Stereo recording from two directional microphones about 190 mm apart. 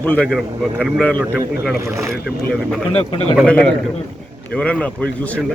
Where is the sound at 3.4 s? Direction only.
5° left (ahead or behind).